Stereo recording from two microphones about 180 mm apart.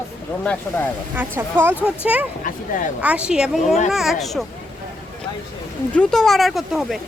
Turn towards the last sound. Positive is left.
turn(degrees=0)  # may be behind; listen again after turning